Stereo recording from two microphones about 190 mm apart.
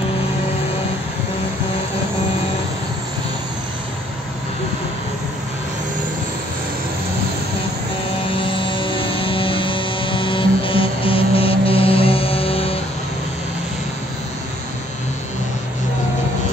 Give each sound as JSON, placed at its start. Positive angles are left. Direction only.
{"t": 8.3, "sound": "music", "side_deg": 25}